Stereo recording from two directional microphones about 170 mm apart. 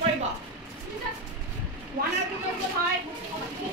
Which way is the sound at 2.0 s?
60° right (ahead or behind).